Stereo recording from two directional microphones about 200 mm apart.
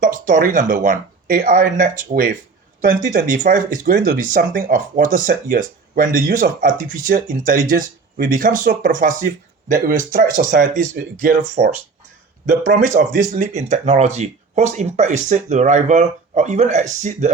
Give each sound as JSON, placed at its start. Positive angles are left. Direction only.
{"t": 0.0, "sound": "speech", "side_deg": -40}